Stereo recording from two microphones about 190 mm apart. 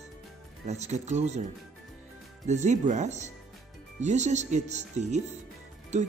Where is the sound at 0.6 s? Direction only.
35° right (ahead or behind).